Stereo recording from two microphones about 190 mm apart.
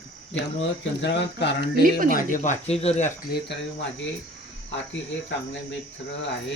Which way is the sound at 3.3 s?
65° left (ahead or behind).